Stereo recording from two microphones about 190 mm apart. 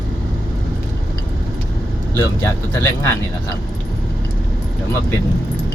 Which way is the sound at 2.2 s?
15° left (ahead or behind).